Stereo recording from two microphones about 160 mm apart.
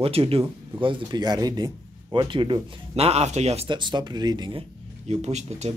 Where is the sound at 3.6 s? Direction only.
30° right (ahead or behind).